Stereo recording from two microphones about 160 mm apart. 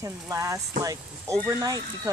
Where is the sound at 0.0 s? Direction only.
20° right (ahead or behind).